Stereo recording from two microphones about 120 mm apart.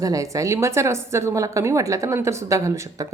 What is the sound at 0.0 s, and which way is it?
Speech, 30° right (ahead or behind).